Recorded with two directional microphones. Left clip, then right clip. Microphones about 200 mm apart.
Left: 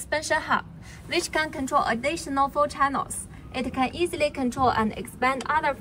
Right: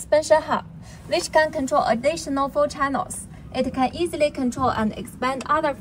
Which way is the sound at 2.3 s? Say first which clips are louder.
Right 1 dB; 25° right (ahead or behind).